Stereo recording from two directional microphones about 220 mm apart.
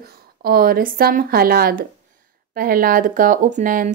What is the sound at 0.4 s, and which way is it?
Speech, 40° right (ahead or behind).